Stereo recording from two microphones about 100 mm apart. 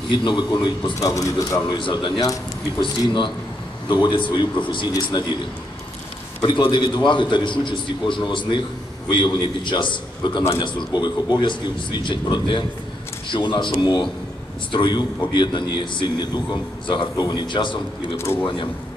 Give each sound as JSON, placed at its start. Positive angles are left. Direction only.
{"t": 0.1, "sound": "a man's voice", "side_deg": 55}
{"t": 0.9, "sound": "speech", "side_deg": 35}
{"t": 1.8, "sound": "a man's voice", "side_deg": 55}
{"t": 3.9, "sound": "a man's voice", "side_deg": 50}
{"t": 5.2, "sound": "a man's voice", "side_deg": 45}
{"t": 6.4, "sound": "a man's voice", "side_deg": 50}
{"t": 18.1, "sound": "speech", "side_deg": 25}